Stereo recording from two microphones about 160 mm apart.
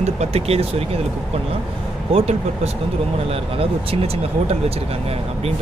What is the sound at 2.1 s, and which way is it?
Speech, 40° right (ahead or behind).